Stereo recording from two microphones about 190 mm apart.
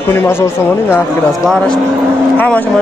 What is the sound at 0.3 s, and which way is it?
A man's voice, 10° left (ahead or behind).